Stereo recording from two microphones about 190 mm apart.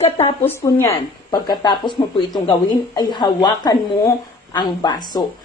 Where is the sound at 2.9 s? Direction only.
25° left (ahead or behind).